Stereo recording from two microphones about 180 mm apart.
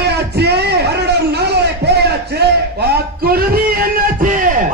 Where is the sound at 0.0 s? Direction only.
65° right (ahead or behind).